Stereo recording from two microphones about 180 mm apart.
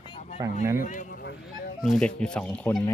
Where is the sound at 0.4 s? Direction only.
20° right (ahead or behind).